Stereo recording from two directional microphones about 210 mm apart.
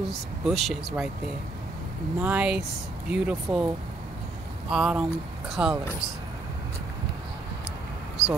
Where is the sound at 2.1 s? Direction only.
5° right (ahead or behind).